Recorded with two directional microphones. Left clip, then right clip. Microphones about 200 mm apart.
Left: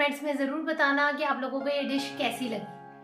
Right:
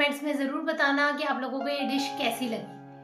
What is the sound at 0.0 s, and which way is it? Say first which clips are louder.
A woman's voice: right 1 dB; centre (ahead or behind).